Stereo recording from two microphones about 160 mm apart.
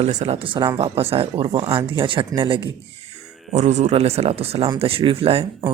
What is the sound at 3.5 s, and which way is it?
Speech, 45° right (ahead or behind).